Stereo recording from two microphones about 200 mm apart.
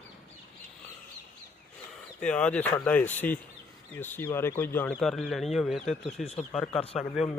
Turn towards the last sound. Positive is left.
turn(degrees=0)  # may be behind; listen again after turning